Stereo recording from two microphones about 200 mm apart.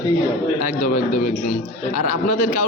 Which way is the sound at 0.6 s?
45° left (ahead or behind).